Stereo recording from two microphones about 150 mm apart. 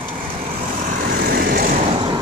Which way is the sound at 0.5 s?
65° right (ahead or behind).